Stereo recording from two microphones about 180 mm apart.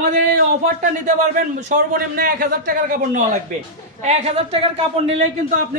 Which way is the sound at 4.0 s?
35° right (ahead or behind).